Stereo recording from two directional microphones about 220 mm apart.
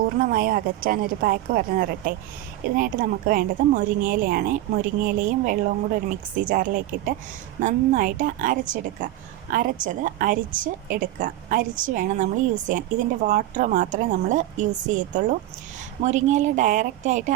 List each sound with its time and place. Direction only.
0.3 s speech: 40° right (ahead or behind)